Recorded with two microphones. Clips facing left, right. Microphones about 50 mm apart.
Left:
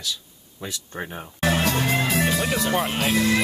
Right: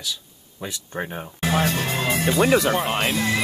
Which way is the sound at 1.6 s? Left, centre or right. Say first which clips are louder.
Left 1 dB; left.